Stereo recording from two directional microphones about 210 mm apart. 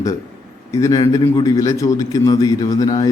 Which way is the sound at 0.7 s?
15° left (ahead or behind).